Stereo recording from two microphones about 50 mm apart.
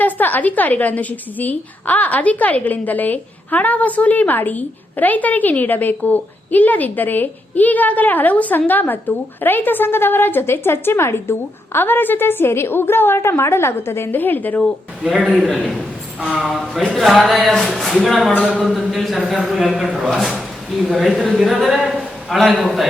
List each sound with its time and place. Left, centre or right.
0.0 s a woman's voice: left
14.1 s a woman's voice: left
15.0 s a man's voice: centre
16.5 s a man's voice: centre